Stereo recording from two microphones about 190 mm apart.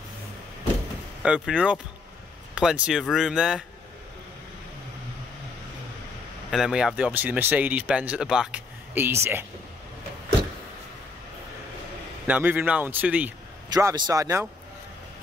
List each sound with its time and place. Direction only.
1.2 s speech: 5° right (ahead or behind)
6.5 s speech: 5° right (ahead or behind)
12.3 s speech: 10° right (ahead or behind)
13.7 s speech: 20° right (ahead or behind)